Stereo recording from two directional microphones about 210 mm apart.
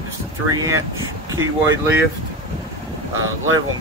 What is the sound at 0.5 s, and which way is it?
Speech, 15° right (ahead or behind).